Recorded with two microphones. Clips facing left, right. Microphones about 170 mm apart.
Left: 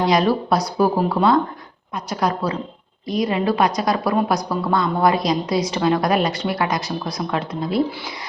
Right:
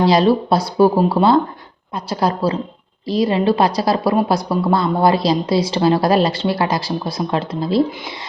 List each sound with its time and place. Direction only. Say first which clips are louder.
0.0 s a woman's voice: right 4 dB; 30° right (ahead or behind)